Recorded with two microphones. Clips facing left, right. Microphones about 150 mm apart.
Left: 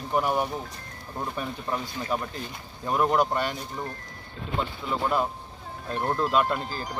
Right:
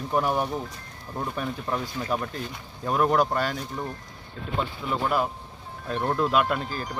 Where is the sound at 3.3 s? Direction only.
20° left (ahead or behind).